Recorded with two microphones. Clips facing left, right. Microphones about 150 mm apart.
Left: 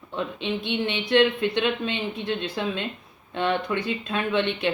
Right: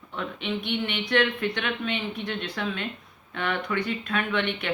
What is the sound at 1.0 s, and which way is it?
Speech, 25° left (ahead or behind).